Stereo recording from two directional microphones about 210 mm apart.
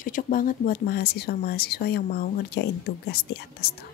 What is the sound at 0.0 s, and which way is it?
A woman's voice, 40° left (ahead or behind).